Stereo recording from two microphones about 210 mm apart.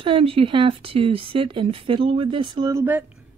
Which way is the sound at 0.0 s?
25° right (ahead or behind).